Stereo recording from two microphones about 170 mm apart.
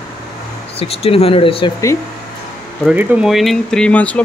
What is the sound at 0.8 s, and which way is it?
Speech, 35° left (ahead or behind).